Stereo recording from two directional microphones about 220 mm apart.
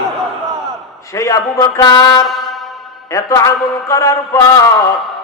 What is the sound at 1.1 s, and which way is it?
A man's voice, 15° left (ahead or behind).